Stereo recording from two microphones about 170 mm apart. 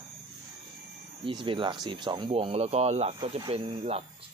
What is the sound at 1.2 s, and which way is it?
Speech, 30° right (ahead or behind).